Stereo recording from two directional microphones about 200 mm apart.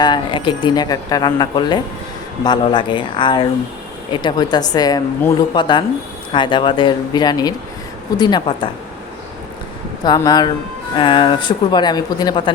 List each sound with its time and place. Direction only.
0.0 s speech: 20° left (ahead or behind)
10.0 s speech: 20° left (ahead or behind)